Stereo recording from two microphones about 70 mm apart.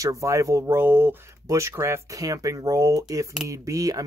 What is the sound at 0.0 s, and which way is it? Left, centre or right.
Speech, right.